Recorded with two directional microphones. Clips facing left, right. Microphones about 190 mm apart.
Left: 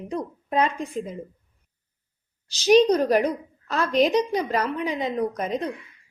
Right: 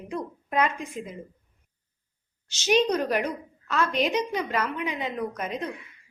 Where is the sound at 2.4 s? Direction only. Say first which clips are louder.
Left 6 dB; 35° left (ahead or behind).